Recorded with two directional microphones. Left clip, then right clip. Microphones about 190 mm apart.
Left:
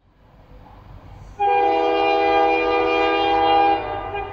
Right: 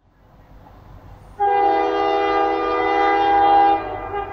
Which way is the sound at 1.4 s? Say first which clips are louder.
Right 1 dB; 20° left (ahead or behind).